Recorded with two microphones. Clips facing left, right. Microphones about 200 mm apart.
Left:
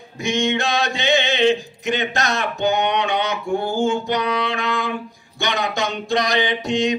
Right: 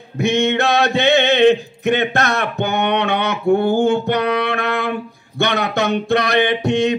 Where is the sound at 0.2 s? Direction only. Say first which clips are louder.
Right 4 dB; 60° right (ahead or behind).